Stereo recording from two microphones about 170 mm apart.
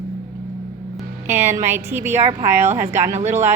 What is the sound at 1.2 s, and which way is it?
A woman's voice, 15° right (ahead or behind).